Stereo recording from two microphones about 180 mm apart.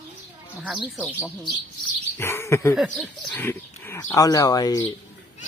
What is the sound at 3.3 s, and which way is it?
Speech, 10° left (ahead or behind).